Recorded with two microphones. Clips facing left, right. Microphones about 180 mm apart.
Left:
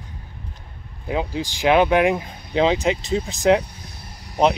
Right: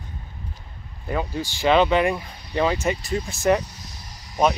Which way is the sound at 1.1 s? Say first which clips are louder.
Left 2 dB; 15° left (ahead or behind).